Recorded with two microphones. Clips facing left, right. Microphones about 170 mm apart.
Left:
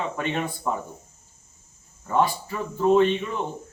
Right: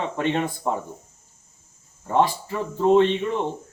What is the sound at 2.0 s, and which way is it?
Speech, 25° right (ahead or behind).